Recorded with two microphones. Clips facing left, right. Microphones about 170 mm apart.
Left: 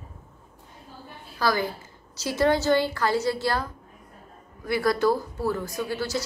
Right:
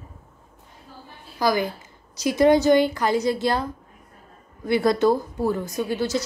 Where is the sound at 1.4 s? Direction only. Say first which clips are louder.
Right 3 dB; 15° right (ahead or behind).